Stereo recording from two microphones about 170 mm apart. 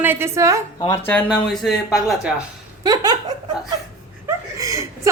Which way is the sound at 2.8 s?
25° right (ahead or behind).